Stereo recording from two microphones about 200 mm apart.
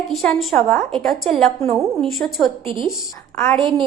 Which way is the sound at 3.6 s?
25° right (ahead or behind).